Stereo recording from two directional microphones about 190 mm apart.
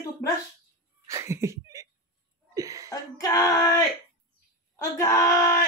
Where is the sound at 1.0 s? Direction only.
15° right (ahead or behind).